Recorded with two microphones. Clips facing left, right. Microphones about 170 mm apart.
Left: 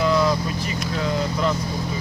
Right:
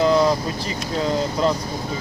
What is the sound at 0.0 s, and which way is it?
Vehicle, 30° right (ahead or behind).